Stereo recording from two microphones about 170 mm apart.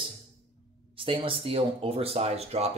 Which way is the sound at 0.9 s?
30° right (ahead or behind).